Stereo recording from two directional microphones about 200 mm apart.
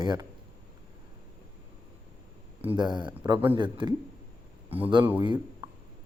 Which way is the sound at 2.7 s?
20° right (ahead or behind).